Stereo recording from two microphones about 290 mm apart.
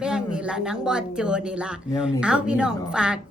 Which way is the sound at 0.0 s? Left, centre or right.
Centre.